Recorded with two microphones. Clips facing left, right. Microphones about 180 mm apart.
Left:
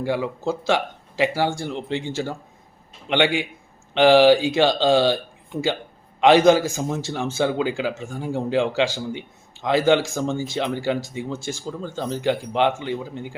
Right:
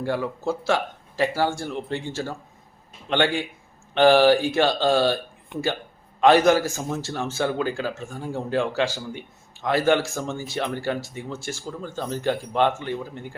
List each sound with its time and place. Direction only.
0.0 s speech: 15° left (ahead or behind)
3.1 s speech: 15° left (ahead or behind)
6.1 s speech: 20° left (ahead or behind)